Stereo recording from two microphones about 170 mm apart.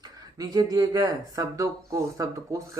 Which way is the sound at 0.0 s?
20° right (ahead or behind).